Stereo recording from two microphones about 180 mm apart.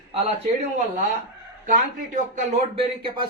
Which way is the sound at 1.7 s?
45° right (ahead or behind).